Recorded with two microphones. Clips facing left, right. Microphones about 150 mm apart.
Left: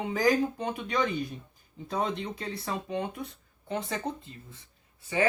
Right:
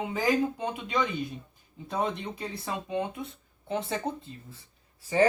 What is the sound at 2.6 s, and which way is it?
Speech, 20° right (ahead or behind).